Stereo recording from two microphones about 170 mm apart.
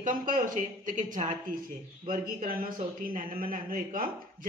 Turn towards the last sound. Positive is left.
turn(degrees=-55)  # may be behind; listen again after turning